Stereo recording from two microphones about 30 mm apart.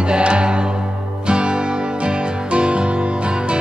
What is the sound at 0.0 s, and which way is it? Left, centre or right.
Music, right.